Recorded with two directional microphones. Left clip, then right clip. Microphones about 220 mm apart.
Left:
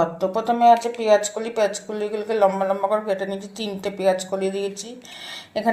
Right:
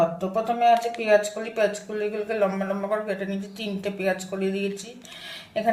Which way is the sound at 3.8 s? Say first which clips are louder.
Left 6 dB; 25° left (ahead or behind).